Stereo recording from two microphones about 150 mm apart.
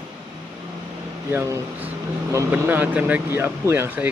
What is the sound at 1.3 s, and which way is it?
Speech, 15° right (ahead or behind).